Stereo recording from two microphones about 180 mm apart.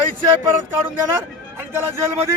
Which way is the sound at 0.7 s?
10° right (ahead or behind).